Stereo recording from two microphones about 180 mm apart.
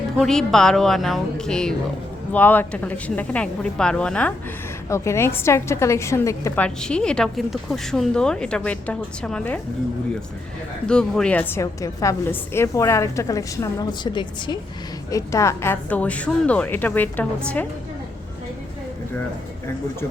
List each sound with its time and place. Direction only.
0.2 s a woman's voice: 5° left (ahead or behind)
10.8 s a woman's voice: 5° left (ahead or behind)